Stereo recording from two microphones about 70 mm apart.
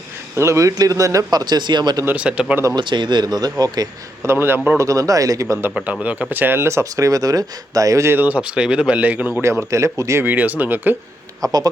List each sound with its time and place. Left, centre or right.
0.3 s speech: right
0.8 s speech: right
2.1 s speech: centre
2.7 s speech: right
4.2 s speech: right
4.8 s speech: right
5.7 s speech: centre
6.3 s speech: right
6.9 s speech: right
8.1 s speech: right
9.4 s speech: right
10.2 s speech: right
11.4 s speech: right